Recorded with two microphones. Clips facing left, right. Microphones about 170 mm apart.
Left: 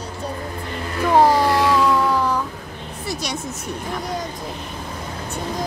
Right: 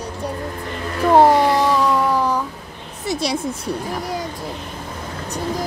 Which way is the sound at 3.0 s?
30° right (ahead or behind).